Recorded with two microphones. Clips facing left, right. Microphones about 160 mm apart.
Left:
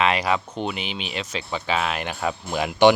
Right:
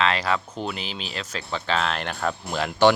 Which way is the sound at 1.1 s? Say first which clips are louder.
Left 1 dB; 5° left (ahead or behind).